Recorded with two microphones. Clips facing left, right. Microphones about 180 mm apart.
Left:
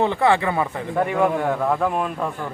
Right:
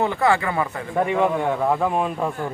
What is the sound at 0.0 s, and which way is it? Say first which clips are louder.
Speech: left 1 dB; 20° left (ahead or behind).